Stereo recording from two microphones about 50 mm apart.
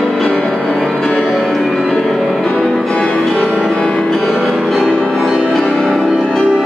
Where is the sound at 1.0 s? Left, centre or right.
Centre.